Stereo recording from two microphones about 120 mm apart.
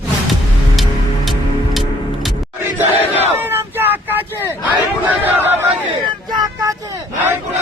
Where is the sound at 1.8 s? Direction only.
Centre (ahead or behind).